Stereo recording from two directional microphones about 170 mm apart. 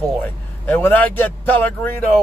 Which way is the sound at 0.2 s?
10° left (ahead or behind).